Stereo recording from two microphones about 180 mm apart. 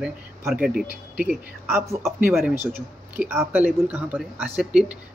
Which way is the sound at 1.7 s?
15° right (ahead or behind).